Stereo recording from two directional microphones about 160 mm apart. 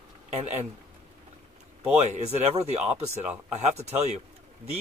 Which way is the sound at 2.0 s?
45° right (ahead or behind).